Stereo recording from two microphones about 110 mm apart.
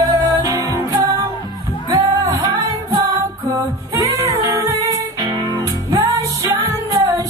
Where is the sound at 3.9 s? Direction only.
30° right (ahead or behind).